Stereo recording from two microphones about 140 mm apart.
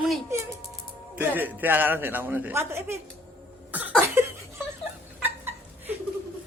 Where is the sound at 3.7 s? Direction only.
10° right (ahead or behind).